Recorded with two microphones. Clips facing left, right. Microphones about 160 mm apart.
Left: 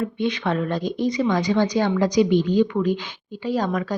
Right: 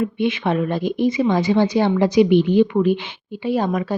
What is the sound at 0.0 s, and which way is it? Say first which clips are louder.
Speech: right 3 dB; 20° right (ahead or behind).